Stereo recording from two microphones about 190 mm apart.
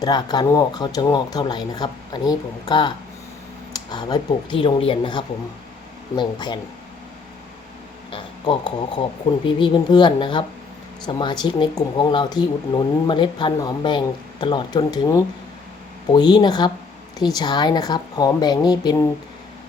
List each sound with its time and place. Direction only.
0.0 s speech: 20° left (ahead or behind)
8.1 s speech: 25° left (ahead or behind)